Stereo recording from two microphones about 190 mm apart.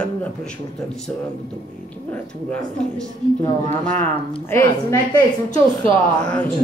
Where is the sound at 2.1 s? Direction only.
5° left (ahead or behind).